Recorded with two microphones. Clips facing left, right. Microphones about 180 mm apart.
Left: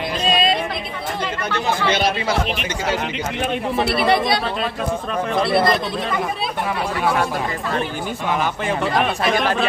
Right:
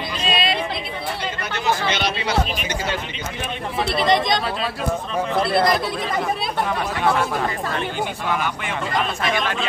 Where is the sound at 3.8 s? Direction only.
10° left (ahead or behind).